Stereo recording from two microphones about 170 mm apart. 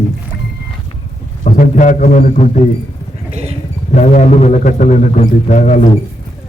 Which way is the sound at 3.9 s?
45° left (ahead or behind).